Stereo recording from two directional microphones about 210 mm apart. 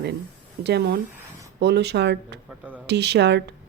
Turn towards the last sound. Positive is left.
turn(degrees=-55)  # may be behind; listen again after turning